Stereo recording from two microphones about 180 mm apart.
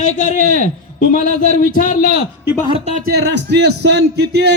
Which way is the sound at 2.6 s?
30° right (ahead or behind).